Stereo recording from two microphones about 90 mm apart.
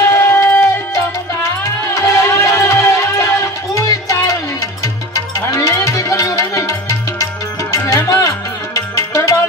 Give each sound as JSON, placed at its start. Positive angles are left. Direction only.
{"t": 0.1, "sound": "music", "side_deg": 30}
{"t": 1.6, "sound": "music", "side_deg": 35}
{"t": 5.5, "sound": "music", "side_deg": 35}